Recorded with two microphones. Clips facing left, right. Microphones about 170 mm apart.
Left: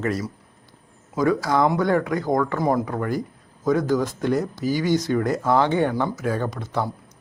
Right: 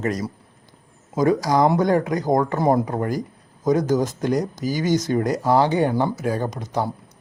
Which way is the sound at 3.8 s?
45° right (ahead or behind).